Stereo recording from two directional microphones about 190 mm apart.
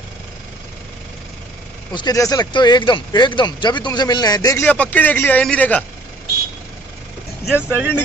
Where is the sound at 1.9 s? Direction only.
20° left (ahead or behind).